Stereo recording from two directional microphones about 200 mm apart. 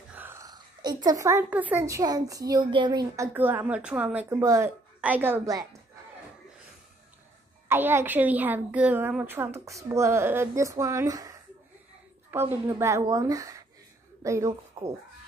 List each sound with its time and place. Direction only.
0.1 s a woman's voice: 10° right (ahead or behind)
3.3 s a woman's voice: 10° right (ahead or behind)
7.6 s a woman's voice: 10° right (ahead or behind)